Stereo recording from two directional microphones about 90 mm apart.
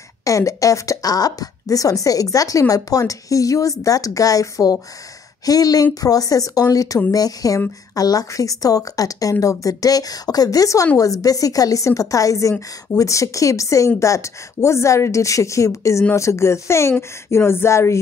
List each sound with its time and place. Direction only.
0.2 s a woman's voice: 35° left (ahead or behind)